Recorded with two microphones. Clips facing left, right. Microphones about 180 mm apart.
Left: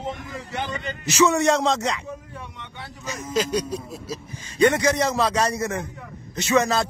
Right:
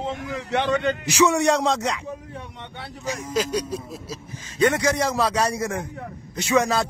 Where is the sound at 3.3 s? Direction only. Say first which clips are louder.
Left 2 dB; 10° right (ahead or behind).